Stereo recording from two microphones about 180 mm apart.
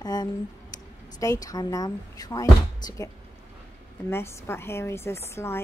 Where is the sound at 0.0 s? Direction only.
20° left (ahead or behind).